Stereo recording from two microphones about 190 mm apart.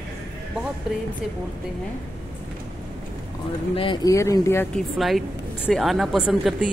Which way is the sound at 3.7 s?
25° left (ahead or behind).